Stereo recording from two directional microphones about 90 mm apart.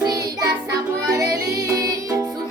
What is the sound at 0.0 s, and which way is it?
Music, 45° right (ahead or behind).